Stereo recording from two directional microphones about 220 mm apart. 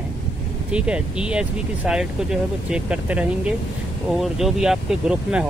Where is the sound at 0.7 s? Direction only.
5° right (ahead or behind).